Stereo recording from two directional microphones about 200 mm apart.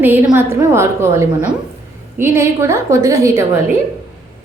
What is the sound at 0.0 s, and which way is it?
A woman's voice, 10° right (ahead or behind).